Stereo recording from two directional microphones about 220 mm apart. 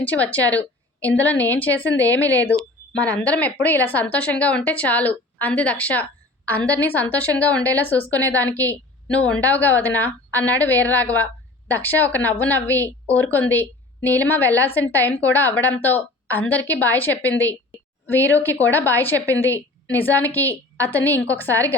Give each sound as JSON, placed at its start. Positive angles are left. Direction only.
{"t": 0.0, "sound": "a woman's voice", "side_deg": 5}